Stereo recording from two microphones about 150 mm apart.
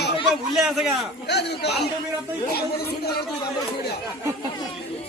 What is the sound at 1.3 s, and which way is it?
Speech, 90° left.